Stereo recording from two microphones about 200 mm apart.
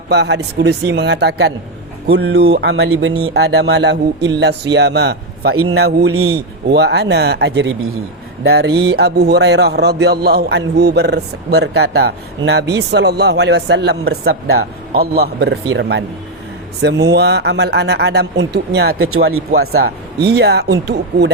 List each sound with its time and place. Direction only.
0.1 s speech: 60° right (ahead or behind)
2.7 s speech: 85° right; by 5.5 s 55° right (ahead or behind)
5.5 s a man's voice: 90° right
6.2 s speech: 75° right (ahead or behind); by 19.4 s 90° right
19.5 s speech: 50° right (ahead or behind)